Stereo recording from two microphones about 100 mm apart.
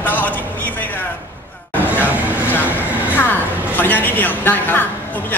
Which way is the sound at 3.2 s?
20° left (ahead or behind).